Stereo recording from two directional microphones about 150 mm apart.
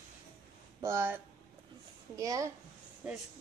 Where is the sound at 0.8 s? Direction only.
15° right (ahead or behind).